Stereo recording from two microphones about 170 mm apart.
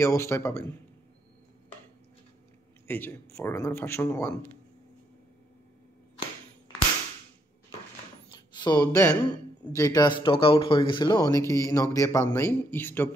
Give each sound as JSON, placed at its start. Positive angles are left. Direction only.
{"t": 0.0, "sound": "speech", "side_deg": 15}
{"t": 2.9, "sound": "speech", "side_deg": 15}
{"t": 8.3, "sound": "a sound", "side_deg": 25}
{"t": 9.7, "sound": "speech", "side_deg": 20}